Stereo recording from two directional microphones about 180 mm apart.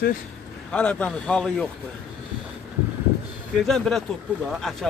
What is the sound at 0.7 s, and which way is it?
Speech, 5° left (ahead or behind).